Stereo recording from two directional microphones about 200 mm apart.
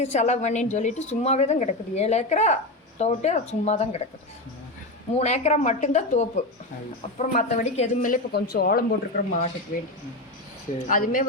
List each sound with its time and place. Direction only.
0.0 s a woman's voice: 35° left (ahead or behind)
5.1 s a woman's voice: 35° left (ahead or behind)
10.8 s a woman's voice: 40° left (ahead or behind)